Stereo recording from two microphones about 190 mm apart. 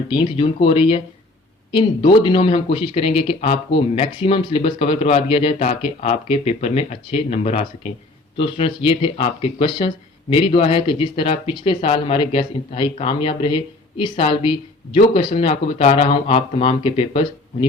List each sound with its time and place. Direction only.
0.1 s a man's voice: 25° left (ahead or behind)